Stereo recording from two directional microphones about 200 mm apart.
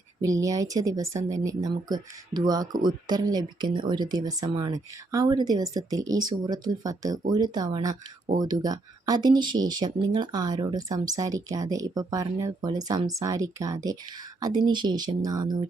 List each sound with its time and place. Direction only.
0.2 s speech: 15° right (ahead or behind)